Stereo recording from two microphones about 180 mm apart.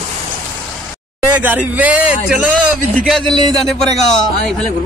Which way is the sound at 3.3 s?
20° right (ahead or behind).